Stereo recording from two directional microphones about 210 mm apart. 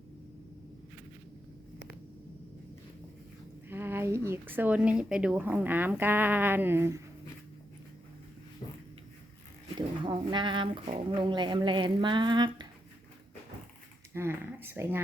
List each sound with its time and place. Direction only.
3.7 s speech: 10° right (ahead or behind)
9.7 s speech: 20° right (ahead or behind)
14.1 s speech: 10° right (ahead or behind)